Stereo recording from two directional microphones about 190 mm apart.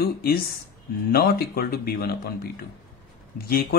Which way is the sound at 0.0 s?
55° left (ahead or behind).